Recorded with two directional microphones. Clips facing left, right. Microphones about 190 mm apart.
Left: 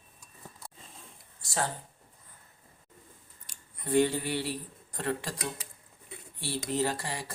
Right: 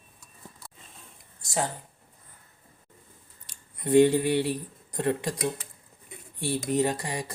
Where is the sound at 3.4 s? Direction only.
20° right (ahead or behind).